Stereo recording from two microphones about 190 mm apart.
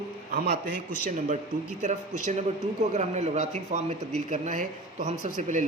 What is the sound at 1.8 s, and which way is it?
A man's voice, 40° right (ahead or behind).